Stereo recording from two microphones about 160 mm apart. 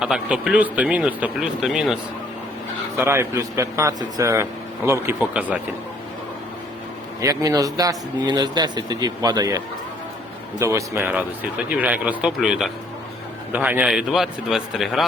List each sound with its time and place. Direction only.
0.0 s speech: 5° right (ahead or behind)
3.0 s speech: 15° right (ahead or behind)
7.2 s a man's voice: 20° right (ahead or behind); by 15.0 s 5° right (ahead or behind)